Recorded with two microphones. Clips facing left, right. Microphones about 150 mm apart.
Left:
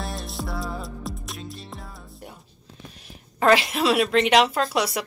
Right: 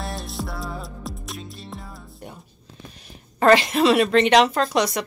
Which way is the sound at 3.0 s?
Centre (ahead or behind).